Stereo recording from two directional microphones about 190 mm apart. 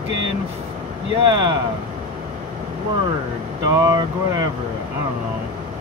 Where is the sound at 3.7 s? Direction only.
20° right (ahead or behind).